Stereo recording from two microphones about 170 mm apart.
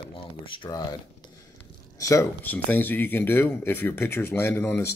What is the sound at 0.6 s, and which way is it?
Speech, 25° left (ahead or behind).